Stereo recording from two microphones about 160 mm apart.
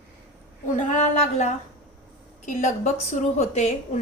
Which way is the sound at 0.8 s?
50° left (ahead or behind).